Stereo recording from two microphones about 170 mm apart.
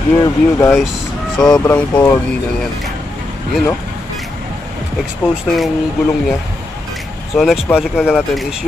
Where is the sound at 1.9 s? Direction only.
20° left (ahead or behind).